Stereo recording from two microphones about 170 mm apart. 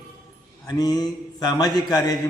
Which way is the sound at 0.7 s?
25° left (ahead or behind).